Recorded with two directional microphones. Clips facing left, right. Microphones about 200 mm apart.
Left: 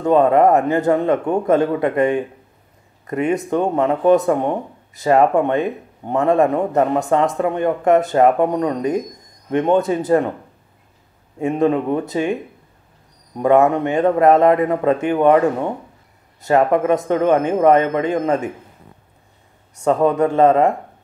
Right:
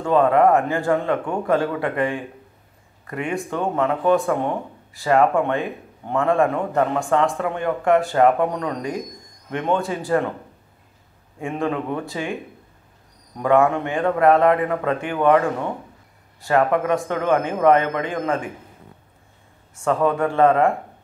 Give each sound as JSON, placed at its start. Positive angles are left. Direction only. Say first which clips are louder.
{"t": 0.0, "sound": "speech", "louder": "left 3 dB", "side_deg": 20}
{"t": 9.7, "sound": "speech", "louder": "left 5 dB", "side_deg": 20}
{"t": 11.3, "sound": "speech", "louder": "left 7 dB", "side_deg": 20}
{"t": 13.4, "sound": "speech", "louder": "left 4 dB", "side_deg": 20}
{"t": 19.8, "sound": "speech", "louder": "left 4 dB", "side_deg": 20}